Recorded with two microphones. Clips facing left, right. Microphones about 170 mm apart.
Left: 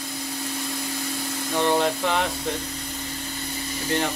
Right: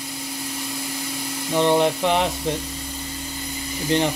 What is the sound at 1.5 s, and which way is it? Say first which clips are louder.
Speech: right 4 dB; 20° right (ahead or behind).